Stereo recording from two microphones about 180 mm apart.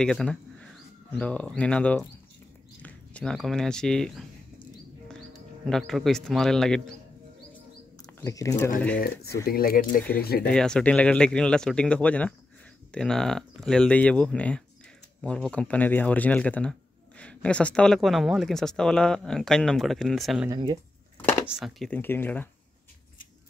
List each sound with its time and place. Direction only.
0.0 s speech: 5° left (ahead or behind)
5.7 s speech: centre (ahead or behind)
8.2 s speech: 20° left (ahead or behind)
9.0 s speech: 60° left (ahead or behind)
10.5 s speech: 5° left (ahead or behind)
20.4 s speech: 25° right (ahead or behind)
21.5 s speech: centre (ahead or behind)